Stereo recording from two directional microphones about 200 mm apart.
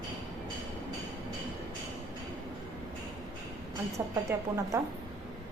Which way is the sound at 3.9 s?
15° right (ahead or behind).